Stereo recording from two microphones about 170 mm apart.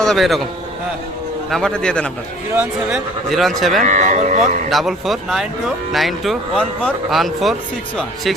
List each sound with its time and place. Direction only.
0.0 s a man's voice: centre (ahead or behind)
1.5 s speech: 5° left (ahead or behind)
2.5 s a man's voice: 10° right (ahead or behind)
3.2 s speech: centre (ahead or behind)
3.8 s speech: 45° right (ahead or behind)
4.7 s speech: centre (ahead or behind)